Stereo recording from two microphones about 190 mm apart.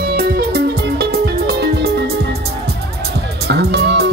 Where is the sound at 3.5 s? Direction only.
60° right (ahead or behind).